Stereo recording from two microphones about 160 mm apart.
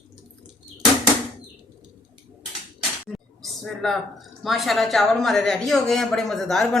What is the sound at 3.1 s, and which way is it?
Speech, centre (ahead or behind).